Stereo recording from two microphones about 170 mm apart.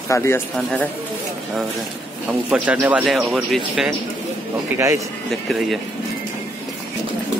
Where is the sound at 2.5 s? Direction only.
10° right (ahead or behind).